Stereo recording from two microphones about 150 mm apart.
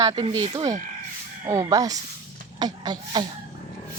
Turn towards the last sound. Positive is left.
turn(degrees=-30)  # may be behind; listen again after turning